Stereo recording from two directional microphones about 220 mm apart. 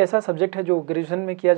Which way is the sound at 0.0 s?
20° right (ahead or behind).